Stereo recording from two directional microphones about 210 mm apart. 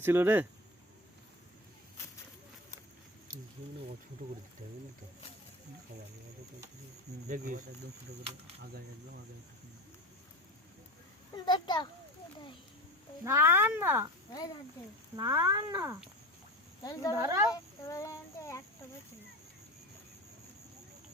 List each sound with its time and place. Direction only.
0.0 s speech: 10° right (ahead or behind)
7.3 s speech: 35° right (ahead or behind)
11.4 s a sound: 20° left (ahead or behind)
13.2 s speech: 10° right (ahead or behind)
15.1 s speech: 20° right (ahead or behind)
16.8 s child singing: 15° left (ahead or behind)
17.2 s speech: 15° right (ahead or behind)
17.5 s child singing: 15° left (ahead or behind)